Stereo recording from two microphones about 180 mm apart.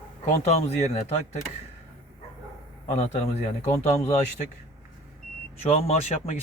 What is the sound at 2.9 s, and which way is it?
Speech, 40° left (ahead or behind).